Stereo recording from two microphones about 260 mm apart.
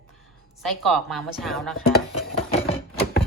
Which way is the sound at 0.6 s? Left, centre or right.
Centre.